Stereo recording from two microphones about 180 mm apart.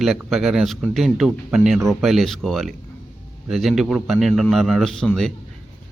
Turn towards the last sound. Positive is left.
turn(degrees=5)  # may be behind; listen again after turning